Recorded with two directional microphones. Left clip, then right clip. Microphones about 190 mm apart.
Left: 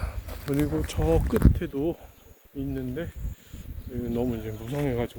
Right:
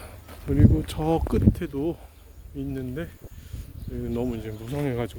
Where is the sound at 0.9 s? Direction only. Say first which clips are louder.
Even; 35° right (ahead or behind).